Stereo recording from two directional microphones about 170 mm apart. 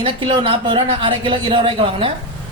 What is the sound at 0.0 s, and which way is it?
Speech, 30° right (ahead or behind).